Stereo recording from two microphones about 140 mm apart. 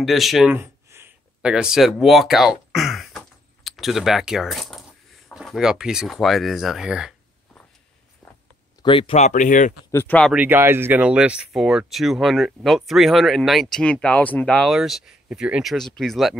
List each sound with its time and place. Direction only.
0.0 s speech: centre (ahead or behind)
0.5 s a sound: 15° right (ahead or behind)
1.4 s speech: 5° right (ahead or behind)
8.8 s speech: 40° left (ahead or behind)
9.2 s speech: 65° left (ahead or behind)
9.8 s speech: 20° left (ahead or behind)
10.3 s speech: 10° right (ahead or behind)